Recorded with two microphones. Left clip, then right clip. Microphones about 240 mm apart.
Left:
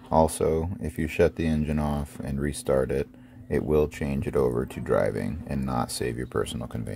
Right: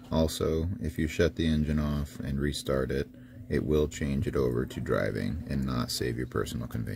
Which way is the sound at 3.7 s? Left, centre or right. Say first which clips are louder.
Left 6 dB; centre.